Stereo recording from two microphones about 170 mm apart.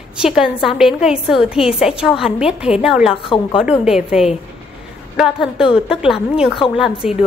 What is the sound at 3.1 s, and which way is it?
Speech, 30° left (ahead or behind).